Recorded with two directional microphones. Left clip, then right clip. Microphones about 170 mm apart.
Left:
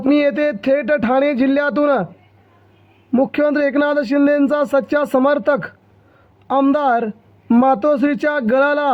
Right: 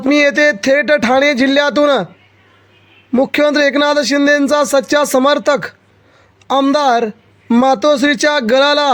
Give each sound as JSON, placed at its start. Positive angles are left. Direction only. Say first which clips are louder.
{"t": 0.1, "sound": "a man's voice", "louder": "right 5 dB", "side_deg": -45}
{"t": 3.1, "sound": "a man's voice", "louder": "right 4 dB", "side_deg": -40}